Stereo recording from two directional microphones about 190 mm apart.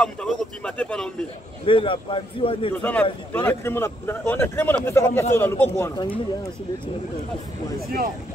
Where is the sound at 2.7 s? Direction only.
10° left (ahead or behind).